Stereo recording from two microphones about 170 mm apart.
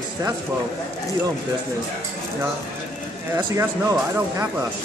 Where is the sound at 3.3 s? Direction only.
20° right (ahead or behind).